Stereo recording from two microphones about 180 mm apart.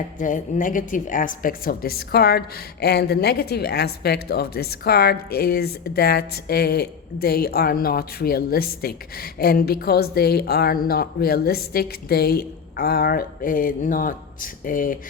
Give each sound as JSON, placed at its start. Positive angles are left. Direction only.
{"t": 0.2, "sound": "a woman's voice", "side_deg": 45}